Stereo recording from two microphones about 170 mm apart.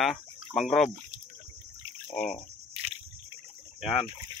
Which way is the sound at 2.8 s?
35° right (ahead or behind).